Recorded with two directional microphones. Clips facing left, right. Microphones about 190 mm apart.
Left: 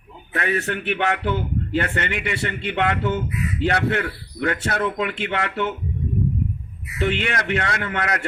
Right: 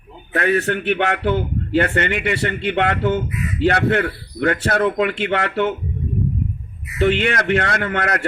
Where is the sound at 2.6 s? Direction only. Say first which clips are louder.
Right 5 dB; 75° right (ahead or behind).